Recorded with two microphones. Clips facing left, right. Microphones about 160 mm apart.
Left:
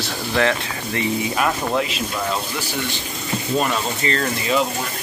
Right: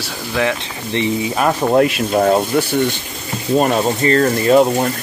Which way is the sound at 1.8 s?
55° right (ahead or behind).